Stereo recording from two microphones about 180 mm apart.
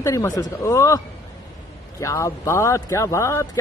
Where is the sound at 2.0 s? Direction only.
15° left (ahead or behind).